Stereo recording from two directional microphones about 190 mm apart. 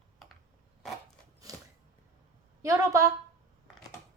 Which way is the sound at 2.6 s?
15° right (ahead or behind).